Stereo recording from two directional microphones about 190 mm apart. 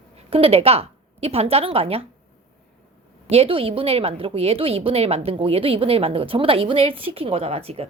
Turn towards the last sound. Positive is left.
turn(degrees=-30)  # may be behind; listen again after turning